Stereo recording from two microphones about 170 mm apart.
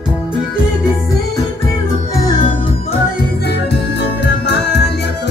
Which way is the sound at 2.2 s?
25° left (ahead or behind).